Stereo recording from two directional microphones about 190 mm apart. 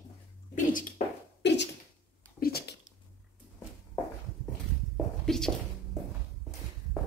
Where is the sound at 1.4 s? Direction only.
65° left (ahead or behind).